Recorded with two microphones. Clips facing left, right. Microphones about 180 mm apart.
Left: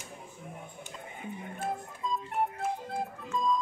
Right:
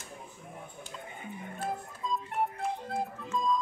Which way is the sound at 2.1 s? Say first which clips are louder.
Even; centre (ahead or behind).